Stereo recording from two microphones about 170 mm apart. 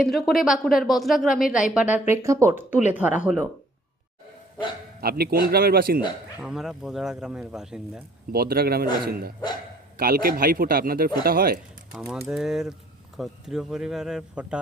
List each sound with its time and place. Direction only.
0.0 s speech: centre (ahead or behind)
4.9 s speech: 65° right (ahead or behind)
6.4 s speech: 5° right (ahead or behind)
8.3 s speech: 65° right (ahead or behind)
11.9 s speech: 5° right (ahead or behind)